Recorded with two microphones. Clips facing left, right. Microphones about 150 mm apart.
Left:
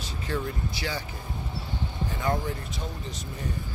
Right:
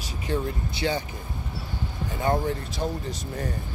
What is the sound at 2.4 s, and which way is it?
Speech, 35° right (ahead or behind).